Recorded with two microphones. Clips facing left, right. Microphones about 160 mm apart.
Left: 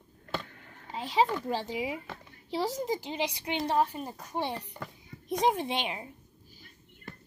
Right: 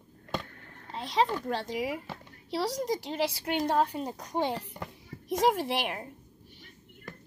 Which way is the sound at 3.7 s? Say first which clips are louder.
Left 1 dB; 15° right (ahead or behind).